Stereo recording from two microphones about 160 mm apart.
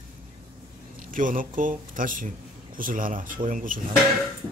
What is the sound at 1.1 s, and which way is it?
Speech, 55° right (ahead or behind).